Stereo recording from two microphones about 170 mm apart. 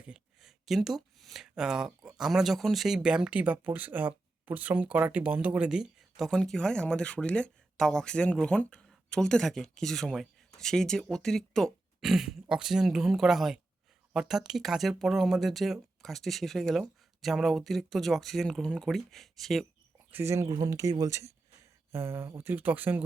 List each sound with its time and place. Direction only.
0.0 s a sound: 5° right (ahead or behind)
2.0 s speech: 5° right (ahead or behind)
20.1 s speech: 15° right (ahead or behind)